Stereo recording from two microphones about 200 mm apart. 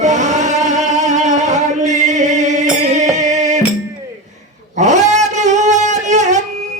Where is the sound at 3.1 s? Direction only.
35° right (ahead or behind).